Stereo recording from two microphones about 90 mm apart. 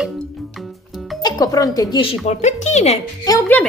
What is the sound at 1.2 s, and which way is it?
Speech, 45° left (ahead or behind).